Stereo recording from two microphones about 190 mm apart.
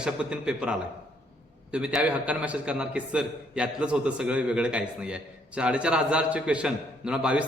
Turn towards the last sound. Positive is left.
turn(degrees=-5)  # may be behind; listen again after turning